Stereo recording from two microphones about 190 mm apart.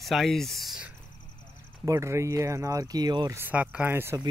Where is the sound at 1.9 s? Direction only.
15° right (ahead or behind).